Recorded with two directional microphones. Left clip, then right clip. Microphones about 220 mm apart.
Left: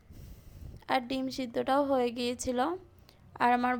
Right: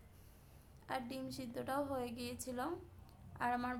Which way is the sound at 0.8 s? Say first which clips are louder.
Left 13 dB; 35° left (ahead or behind).